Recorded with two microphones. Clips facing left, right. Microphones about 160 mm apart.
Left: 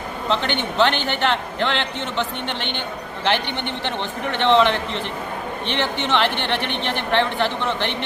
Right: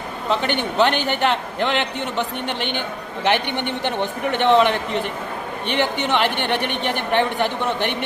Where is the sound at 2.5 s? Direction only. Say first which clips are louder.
Right 2 dB; 45° right (ahead or behind).